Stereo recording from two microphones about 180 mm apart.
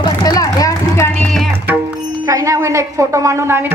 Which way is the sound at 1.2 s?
5° left (ahead or behind).